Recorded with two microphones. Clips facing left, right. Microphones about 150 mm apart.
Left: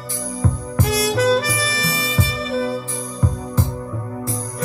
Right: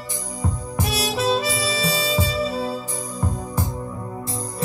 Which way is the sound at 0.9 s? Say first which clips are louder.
Left 5 dB; 20° right (ahead or behind).